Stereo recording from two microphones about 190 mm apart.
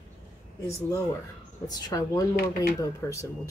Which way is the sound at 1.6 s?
20° left (ahead or behind).